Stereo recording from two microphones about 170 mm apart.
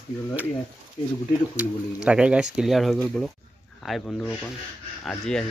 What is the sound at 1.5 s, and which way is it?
Speech, 5° right (ahead or behind).